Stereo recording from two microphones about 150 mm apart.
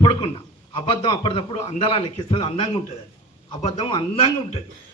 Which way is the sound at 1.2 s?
35° left (ahead or behind).